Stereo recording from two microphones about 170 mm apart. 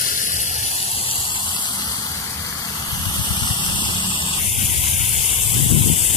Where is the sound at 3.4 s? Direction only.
30° left (ahead or behind).